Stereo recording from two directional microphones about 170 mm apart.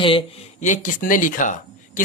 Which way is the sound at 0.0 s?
35° left (ahead or behind).